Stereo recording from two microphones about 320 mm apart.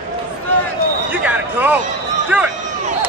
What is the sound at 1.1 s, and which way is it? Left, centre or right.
Basketball bounce, centre.